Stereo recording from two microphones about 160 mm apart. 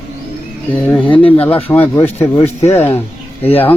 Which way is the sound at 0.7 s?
10° left (ahead or behind).